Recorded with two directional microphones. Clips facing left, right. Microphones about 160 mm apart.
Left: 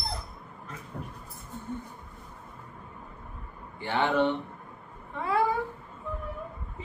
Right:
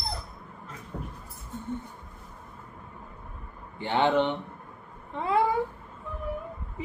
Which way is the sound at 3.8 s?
20° right (ahead or behind).